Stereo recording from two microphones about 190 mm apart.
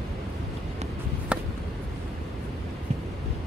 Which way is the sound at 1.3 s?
5° right (ahead or behind).